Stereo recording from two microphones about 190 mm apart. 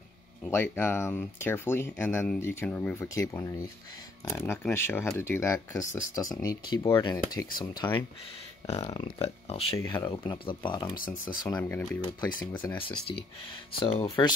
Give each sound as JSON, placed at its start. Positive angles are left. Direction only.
{"t": 0.4, "sound": "speech", "side_deg": 15}
{"t": 9.8, "sound": "speech", "side_deg": 20}
{"t": 12.6, "sound": "speech", "side_deg": 30}